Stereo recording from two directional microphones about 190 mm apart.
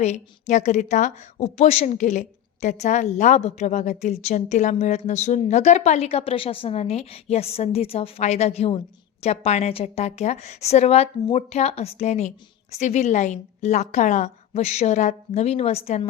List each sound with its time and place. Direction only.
0.0 s speech: 35° left (ahead or behind)